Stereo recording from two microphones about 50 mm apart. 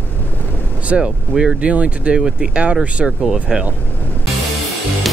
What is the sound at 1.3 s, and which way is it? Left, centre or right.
Speech, centre.